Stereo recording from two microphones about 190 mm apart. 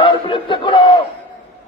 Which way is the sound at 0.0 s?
25° left (ahead or behind).